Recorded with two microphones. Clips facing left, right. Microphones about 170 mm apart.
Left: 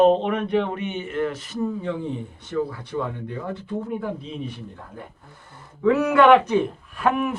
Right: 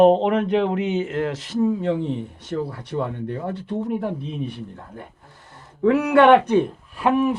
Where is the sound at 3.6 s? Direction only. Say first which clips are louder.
Right 4 dB; 70° right (ahead or behind).